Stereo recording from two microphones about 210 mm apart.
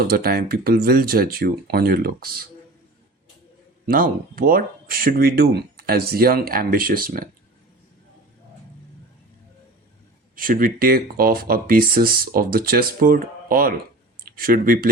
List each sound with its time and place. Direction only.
0.1 s speech: 45° right (ahead or behind)
3.8 s speech: 45° right (ahead or behind)
10.3 s speech: 40° right (ahead or behind)